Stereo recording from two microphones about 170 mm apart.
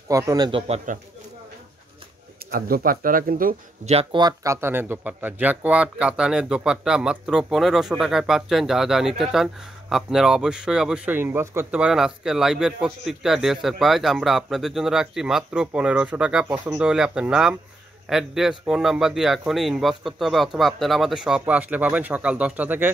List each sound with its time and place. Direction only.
0.1 s a man's voice: 20° right (ahead or behind)
0.5 s speech: 30° right (ahead or behind)
2.5 s speech: 60° right (ahead or behind)
3.8 s speech: 35° right (ahead or behind); by 22.8 s 10° right (ahead or behind)